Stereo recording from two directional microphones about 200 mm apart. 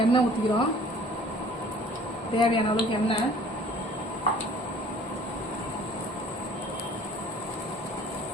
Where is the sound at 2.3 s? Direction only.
25° left (ahead or behind).